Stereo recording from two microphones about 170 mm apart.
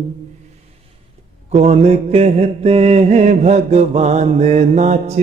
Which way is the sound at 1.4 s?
40° right (ahead or behind).